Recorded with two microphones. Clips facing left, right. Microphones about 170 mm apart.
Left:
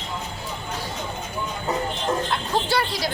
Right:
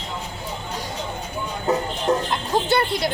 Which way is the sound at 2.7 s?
55° right (ahead or behind).